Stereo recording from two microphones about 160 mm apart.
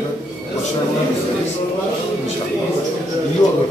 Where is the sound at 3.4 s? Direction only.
20° left (ahead or behind).